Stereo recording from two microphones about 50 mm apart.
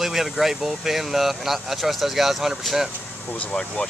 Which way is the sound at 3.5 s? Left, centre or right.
Centre.